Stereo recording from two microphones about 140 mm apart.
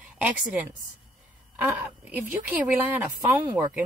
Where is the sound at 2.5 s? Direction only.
10° right (ahead or behind).